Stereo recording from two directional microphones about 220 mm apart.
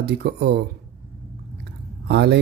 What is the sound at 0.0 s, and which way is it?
Speech, 45° right (ahead or behind).